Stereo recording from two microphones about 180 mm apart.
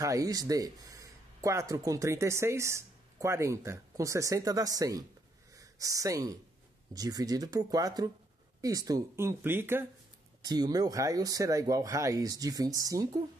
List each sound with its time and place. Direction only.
0.0 s speech: 20° right (ahead or behind)